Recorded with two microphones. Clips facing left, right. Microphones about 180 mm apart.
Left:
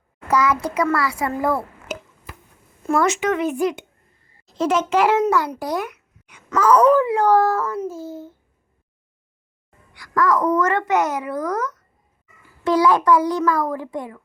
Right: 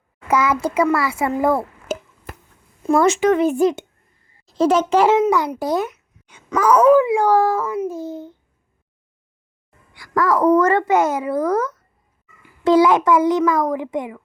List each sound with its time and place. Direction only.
0.3 s a child's voice: 25° right (ahead or behind)
5.3 s a child's voice: 15° right (ahead or behind)
6.5 s a child's voice: 10° right (ahead or behind)
9.9 s a child's voice: 25° right (ahead or behind)